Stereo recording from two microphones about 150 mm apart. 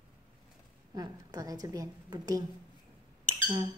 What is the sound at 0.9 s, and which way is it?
A woman's voice, 25° right (ahead or behind).